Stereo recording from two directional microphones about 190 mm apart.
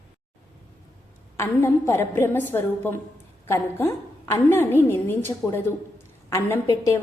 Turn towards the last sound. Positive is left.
turn(degrees=15)  # may be behind; listen again after turning